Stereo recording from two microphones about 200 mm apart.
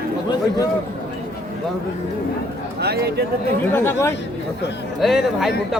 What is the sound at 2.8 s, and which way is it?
Speech, 55° right (ahead or behind).